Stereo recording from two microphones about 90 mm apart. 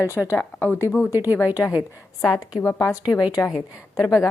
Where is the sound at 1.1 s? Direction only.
20° right (ahead or behind).